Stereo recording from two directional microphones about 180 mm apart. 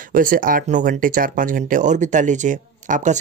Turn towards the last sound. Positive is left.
turn(degrees=-45)  # may be behind; listen again after turning